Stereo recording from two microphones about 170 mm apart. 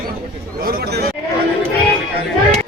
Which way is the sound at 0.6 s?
65° right (ahead or behind).